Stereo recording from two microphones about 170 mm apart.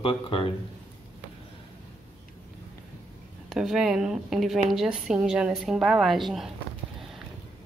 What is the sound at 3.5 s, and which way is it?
A woman's voice, 5° right (ahead or behind).